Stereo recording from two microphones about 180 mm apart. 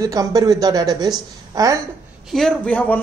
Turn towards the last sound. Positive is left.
turn(degrees=10)  # may be behind; listen again after turning